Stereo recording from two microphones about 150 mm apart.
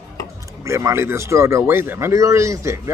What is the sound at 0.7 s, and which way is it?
Speech, 20° right (ahead or behind).